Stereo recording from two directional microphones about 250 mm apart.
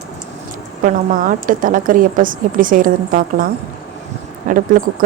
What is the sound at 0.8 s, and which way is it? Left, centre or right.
A woman's voice, right.